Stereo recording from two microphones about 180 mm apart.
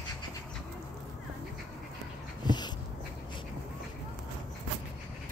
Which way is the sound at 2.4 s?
25° left (ahead or behind).